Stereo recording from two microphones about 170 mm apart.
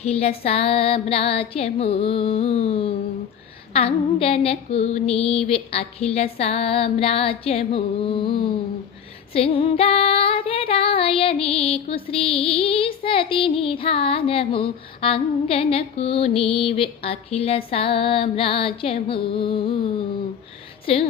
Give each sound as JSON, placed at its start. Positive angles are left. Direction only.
{"t": 0.0, "sound": "child singing", "side_deg": 35}
{"t": 20.9, "sound": "child singing", "side_deg": 35}